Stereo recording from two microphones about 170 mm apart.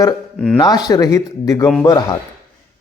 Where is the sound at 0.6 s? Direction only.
25° left (ahead or behind).